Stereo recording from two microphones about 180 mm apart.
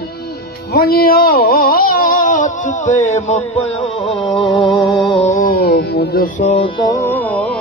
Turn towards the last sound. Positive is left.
turn(degrees=10)  # may be behind; listen again after turning